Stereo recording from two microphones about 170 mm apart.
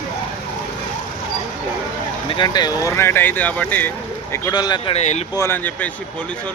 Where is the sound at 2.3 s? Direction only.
25° left (ahead or behind); by 3.9 s 10° left (ahead or behind).